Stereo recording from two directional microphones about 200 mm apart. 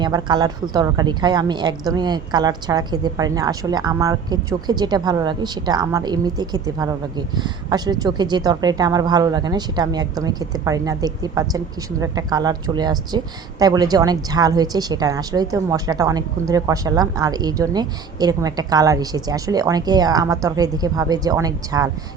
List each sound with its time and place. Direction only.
0.0 s a woman's voice: 20° right (ahead or behind)